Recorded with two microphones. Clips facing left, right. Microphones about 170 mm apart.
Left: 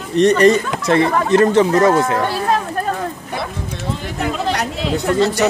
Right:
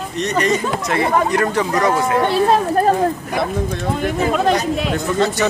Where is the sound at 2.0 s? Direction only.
25° right (ahead or behind).